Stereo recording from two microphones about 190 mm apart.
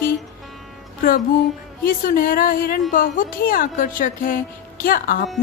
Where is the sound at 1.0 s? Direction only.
50° left (ahead or behind).